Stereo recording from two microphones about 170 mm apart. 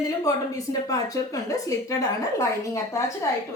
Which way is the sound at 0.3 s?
20° left (ahead or behind).